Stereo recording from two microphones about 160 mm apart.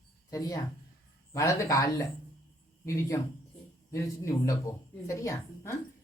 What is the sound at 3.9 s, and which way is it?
A woman's voice, 20° left (ahead or behind).